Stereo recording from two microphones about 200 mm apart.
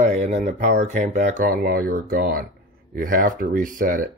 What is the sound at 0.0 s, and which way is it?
Speech, 40° right (ahead or behind).